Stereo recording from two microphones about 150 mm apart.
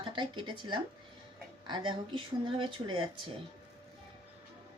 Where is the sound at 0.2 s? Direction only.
30° right (ahead or behind).